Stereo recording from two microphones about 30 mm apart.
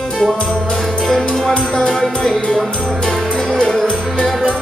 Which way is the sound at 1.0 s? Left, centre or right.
Centre.